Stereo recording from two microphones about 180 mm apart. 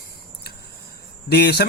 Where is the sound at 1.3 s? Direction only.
65° left (ahead or behind).